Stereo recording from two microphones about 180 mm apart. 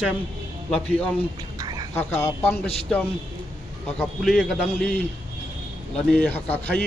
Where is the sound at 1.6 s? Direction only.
20° right (ahead or behind).